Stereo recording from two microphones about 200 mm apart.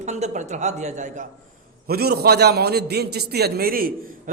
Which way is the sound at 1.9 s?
50° right (ahead or behind).